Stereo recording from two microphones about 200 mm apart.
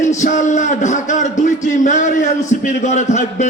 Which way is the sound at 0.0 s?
35° left (ahead or behind).